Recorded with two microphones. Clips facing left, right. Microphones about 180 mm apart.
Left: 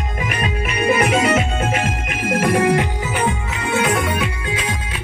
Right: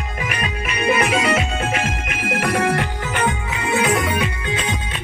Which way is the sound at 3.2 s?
Centre (ahead or behind).